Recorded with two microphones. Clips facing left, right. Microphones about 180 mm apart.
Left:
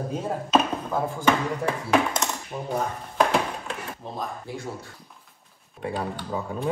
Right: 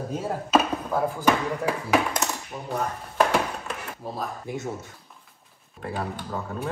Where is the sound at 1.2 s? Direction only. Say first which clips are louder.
Left 2 dB; 5° right (ahead or behind).